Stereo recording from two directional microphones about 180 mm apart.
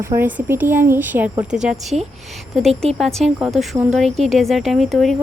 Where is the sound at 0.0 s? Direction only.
15° right (ahead or behind).